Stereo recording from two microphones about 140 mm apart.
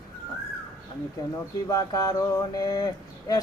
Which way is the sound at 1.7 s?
25° left (ahead or behind).